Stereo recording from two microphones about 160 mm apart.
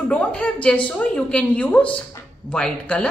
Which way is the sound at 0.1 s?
5° left (ahead or behind).